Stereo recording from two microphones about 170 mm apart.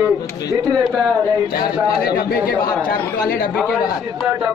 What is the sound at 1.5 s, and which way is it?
Speech, 60° left (ahead or behind).